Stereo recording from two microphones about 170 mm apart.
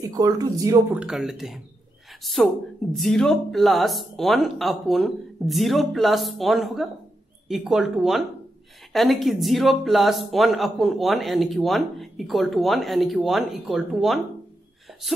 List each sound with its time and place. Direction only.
0.1 s speech: 20° right (ahead or behind)
1.0 s speech: 5° right (ahead or behind)